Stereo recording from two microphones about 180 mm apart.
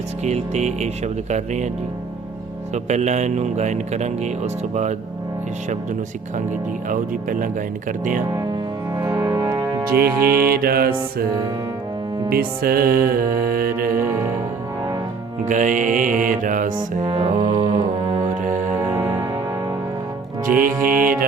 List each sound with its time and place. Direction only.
0.3 s speech: 40° right (ahead or behind)
2.7 s speech: 40° right (ahead or behind)
6.9 s mantra: 45° right (ahead or behind)
9.0 s music: 20° right (ahead or behind)
10.0 s music: 10° right (ahead or behind)
10.3 s music: 55° right (ahead or behind)
12.3 s music: 55° right (ahead or behind)
14.0 s music: 10° right (ahead or behind)
15.4 s mantra: 45° right (ahead or behind)
16.7 s music: 30° right (ahead or behind)
18.8 s music: 10° right (ahead or behind)
20.9 s mantra: 50° right (ahead or behind)